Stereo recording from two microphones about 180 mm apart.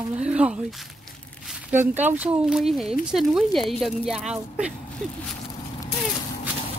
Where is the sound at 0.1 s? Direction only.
5° right (ahead or behind).